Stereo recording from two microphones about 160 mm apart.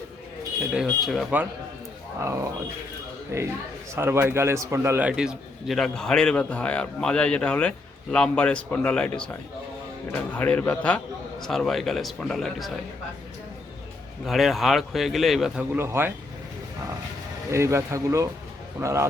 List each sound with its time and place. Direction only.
0.7 s a man's voice: centre (ahead or behind)
2.2 s speech: 20° right (ahead or behind)
3.9 s a man's voice: 15° right (ahead or behind); by 12.7 s centre (ahead or behind)
14.3 s a man's voice: centre (ahead or behind)
17.5 s speech: 15° right (ahead or behind)